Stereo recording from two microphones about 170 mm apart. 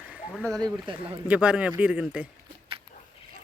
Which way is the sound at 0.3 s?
Centre (ahead or behind).